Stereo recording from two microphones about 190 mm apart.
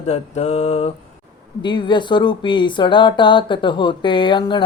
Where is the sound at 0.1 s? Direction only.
35° left (ahead or behind).